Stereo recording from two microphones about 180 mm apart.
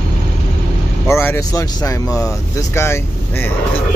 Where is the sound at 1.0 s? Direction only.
15° left (ahead or behind).